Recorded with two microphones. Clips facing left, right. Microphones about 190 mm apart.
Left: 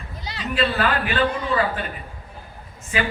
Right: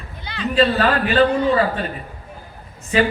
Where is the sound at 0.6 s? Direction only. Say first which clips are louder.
Right 5 dB; 35° right (ahead or behind).